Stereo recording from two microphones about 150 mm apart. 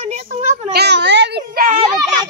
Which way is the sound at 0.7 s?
90° right.